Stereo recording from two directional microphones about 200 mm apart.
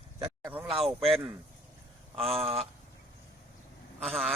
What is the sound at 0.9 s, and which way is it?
Speech, centre (ahead or behind).